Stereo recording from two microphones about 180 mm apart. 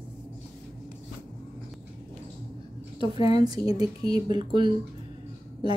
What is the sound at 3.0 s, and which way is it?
A woman's voice, 25° right (ahead or behind).